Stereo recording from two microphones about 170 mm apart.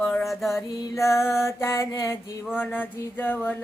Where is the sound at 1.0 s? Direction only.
15° left (ahead or behind).